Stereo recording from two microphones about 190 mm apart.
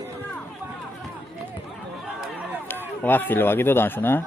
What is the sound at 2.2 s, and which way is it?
Run, 5° right (ahead or behind).